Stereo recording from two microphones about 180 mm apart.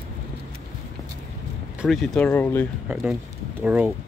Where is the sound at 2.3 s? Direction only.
10° left (ahead or behind).